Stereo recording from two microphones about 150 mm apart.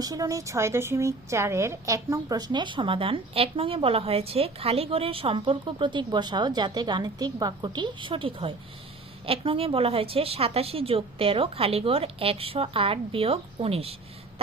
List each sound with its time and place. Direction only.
0.0 s speech: 25° right (ahead or behind); by 13.9 s 40° right (ahead or behind)